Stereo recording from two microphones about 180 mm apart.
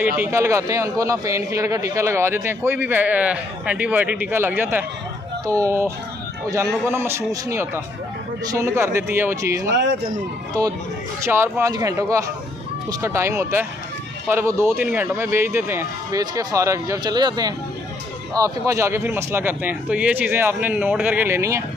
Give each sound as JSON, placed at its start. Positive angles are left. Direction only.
{"t": 0.0, "sound": "a man's voice", "side_deg": -10}